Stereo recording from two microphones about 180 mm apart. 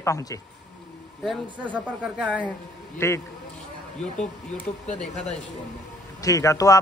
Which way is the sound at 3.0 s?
15° left (ahead or behind).